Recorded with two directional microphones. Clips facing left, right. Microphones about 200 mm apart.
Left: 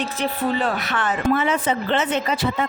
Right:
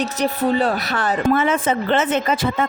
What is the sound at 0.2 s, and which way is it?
A woman's voice, 40° right (ahead or behind).